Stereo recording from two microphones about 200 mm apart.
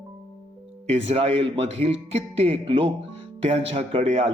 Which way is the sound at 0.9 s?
30° right (ahead or behind).